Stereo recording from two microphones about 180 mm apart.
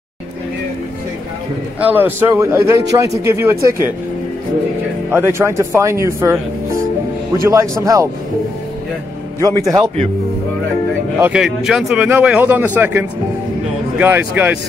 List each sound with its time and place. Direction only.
1.8 s speech: 10° right (ahead or behind)
5.1 s speech: 15° right (ahead or behind)
7.4 s speech: 15° right (ahead or behind)
11.1 s speech: 10° right (ahead or behind)